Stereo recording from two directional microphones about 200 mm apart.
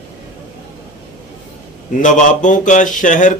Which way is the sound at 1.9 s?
40° left (ahead or behind).